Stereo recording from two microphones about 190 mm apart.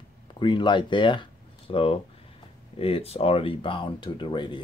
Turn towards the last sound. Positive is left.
turn(degrees=25)  # may be behind; listen again after turning